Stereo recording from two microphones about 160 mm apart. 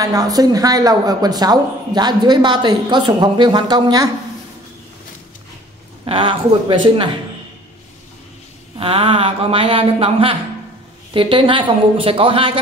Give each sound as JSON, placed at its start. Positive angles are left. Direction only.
{"t": 0.0, "sound": "speech", "side_deg": -20}
{"t": 6.0, "sound": "speech", "side_deg": -30}
{"t": 8.7, "sound": "speech", "side_deg": -35}